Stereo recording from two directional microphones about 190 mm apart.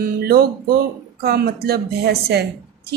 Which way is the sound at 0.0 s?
55° right (ahead or behind).